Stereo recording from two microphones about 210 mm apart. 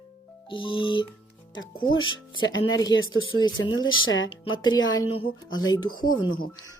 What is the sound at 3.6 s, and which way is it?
Speech, 70° left (ahead or behind).